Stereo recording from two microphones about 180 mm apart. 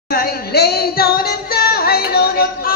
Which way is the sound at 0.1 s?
60° left (ahead or behind).